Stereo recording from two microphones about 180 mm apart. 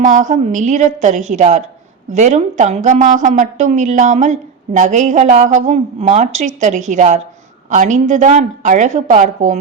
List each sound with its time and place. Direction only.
0.0 s a woman's voice: 45° right (ahead or behind)